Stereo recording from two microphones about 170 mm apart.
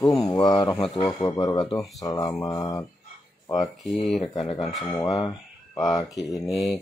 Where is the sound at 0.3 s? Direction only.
25° left (ahead or behind).